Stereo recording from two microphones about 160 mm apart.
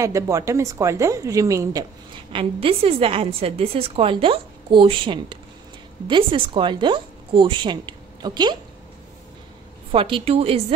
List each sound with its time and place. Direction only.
0.0 s a woman's voice: 20° right (ahead or behind)
2.3 s a woman's voice: 35° right (ahead or behind)
9.8 s a woman's voice: 35° right (ahead or behind)